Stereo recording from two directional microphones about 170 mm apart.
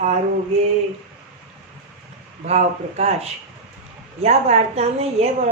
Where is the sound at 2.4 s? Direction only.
40° right (ahead or behind).